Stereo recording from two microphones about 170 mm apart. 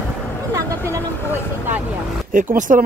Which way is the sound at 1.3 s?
10° right (ahead or behind).